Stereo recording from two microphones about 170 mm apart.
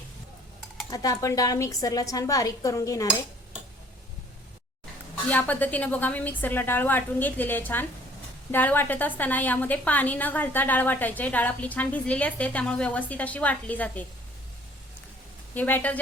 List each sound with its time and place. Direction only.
0.9 s a woman's voice: 20° left (ahead or behind)
5.3 s a woman's voice: 10° left (ahead or behind)
15.5 s a woman's voice: 10° left (ahead or behind)